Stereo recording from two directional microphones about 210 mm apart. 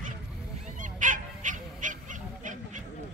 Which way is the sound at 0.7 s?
40° right (ahead or behind).